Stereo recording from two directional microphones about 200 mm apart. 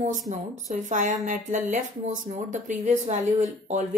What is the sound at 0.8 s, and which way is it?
Speech, 40° right (ahead or behind).